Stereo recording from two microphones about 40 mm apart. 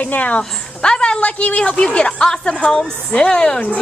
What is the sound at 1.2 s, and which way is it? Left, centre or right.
A woman's voice, left.